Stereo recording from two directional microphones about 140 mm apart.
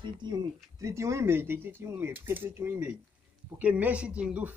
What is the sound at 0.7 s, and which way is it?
Speech, 20° right (ahead or behind).